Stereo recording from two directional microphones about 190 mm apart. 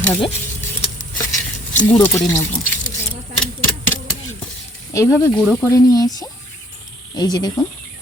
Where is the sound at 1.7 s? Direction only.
40° left (ahead or behind).